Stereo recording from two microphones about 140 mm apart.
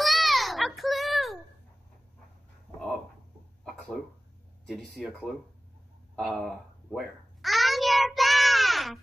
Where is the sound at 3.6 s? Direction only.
5° left (ahead or behind).